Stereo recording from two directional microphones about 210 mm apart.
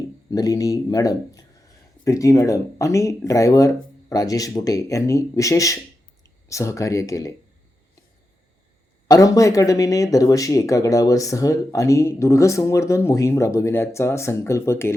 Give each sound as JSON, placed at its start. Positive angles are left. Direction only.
{"t": 0.3, "sound": "speech", "side_deg": 15}
{"t": 9.0, "sound": "speech", "side_deg": 15}